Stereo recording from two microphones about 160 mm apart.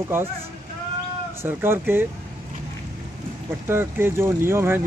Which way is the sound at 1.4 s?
15° right (ahead or behind).